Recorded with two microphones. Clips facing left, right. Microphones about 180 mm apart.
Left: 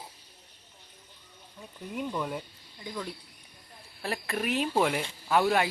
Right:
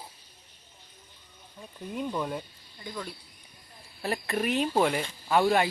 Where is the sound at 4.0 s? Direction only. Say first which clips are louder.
Right 3 dB; centre (ahead or behind).